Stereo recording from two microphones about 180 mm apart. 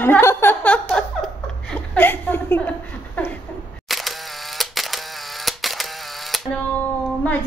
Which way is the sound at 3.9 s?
Centre (ahead or behind).